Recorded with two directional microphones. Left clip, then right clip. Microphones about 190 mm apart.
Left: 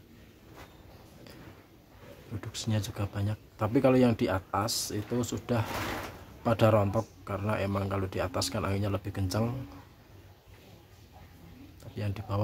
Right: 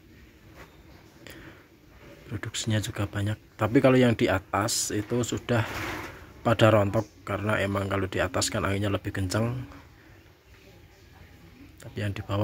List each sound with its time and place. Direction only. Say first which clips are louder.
2.4 s speech: right 5 dB; 15° right (ahead or behind)
11.9 s speech: right 5 dB; 15° right (ahead or behind)